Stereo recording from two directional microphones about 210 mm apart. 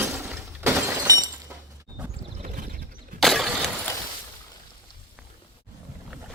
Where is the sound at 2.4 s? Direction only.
40° right (ahead or behind).